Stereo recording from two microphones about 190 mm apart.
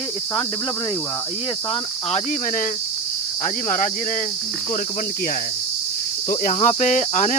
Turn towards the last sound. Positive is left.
turn(degrees=40)  # may be behind; listen again after turning